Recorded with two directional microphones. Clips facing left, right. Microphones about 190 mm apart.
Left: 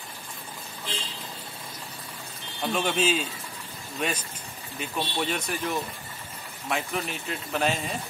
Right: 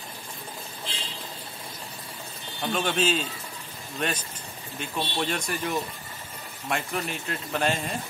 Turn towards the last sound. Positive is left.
turn(degrees=0)  # may be behind; listen again after turning